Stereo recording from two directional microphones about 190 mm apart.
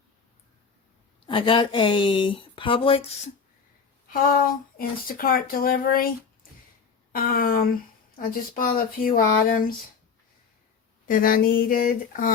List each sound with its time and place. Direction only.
1.3 s speech: 25° left (ahead or behind)
4.1 s speech: 50° left (ahead or behind)
11.1 s speech: 50° left (ahead or behind)